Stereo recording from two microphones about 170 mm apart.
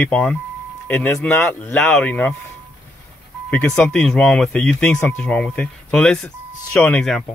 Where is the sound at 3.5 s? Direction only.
5° left (ahead or behind).